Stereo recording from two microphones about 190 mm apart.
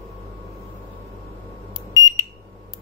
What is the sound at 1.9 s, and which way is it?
Alarm, 15° left (ahead or behind).